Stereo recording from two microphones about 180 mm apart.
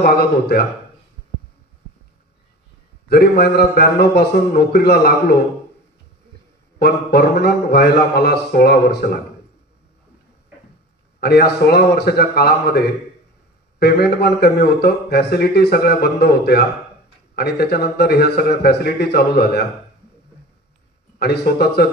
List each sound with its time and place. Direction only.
0.0 s speech: 60° left (ahead or behind)
3.1 s speech: 60° left (ahead or behind)
6.8 s speech: 60° left (ahead or behind)
11.1 s speech: 60° left (ahead or behind)
21.2 s speech: 65° left (ahead or behind)